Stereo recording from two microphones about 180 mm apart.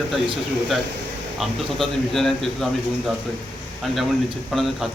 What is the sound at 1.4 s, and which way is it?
A man's voice, centre (ahead or behind).